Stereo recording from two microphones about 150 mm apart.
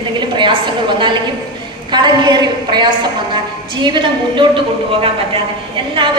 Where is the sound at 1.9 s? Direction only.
30° right (ahead or behind).